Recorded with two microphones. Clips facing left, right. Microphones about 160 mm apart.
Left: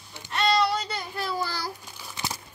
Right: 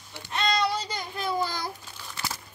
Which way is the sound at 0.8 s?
15° right (ahead or behind).